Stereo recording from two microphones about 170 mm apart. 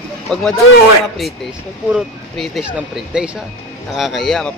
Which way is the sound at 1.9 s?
5° right (ahead or behind).